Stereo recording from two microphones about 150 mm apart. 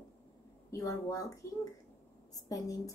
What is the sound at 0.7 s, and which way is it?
Speech, 20° left (ahead or behind).